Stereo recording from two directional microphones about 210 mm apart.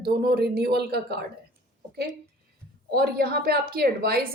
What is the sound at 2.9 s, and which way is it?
A woman's voice, 45° right (ahead or behind).